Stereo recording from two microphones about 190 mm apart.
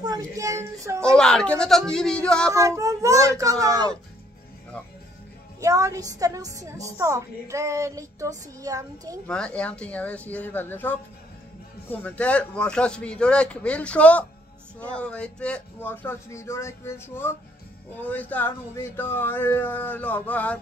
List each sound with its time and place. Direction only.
0.0 s a sound: 20° right (ahead or behind)
1.1 s speech: 5° left (ahead or behind)
2.5 s a woman's voice: 15° right (ahead or behind)
5.6 s a woman's voice: 15° right (ahead or behind)
9.3 s speech: 5° left (ahead or behind)